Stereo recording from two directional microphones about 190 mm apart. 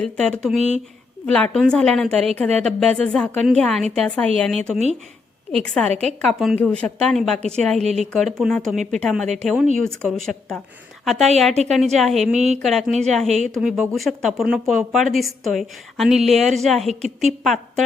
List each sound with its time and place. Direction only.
0.0 s a woman's voice: 5° left (ahead or behind)
11.5 s a woman's voice: 35° right (ahead or behind)
11.9 s a woman's voice: centre (ahead or behind)
12.3 s a woman's voice: 35° right (ahead or behind)
12.6 s a woman's voice: centre (ahead or behind)